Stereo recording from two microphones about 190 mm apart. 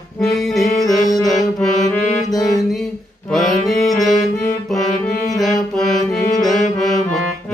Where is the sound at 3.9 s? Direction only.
Centre (ahead or behind).